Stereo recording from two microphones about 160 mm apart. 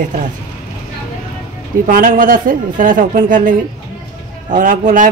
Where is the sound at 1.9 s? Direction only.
60° right (ahead or behind).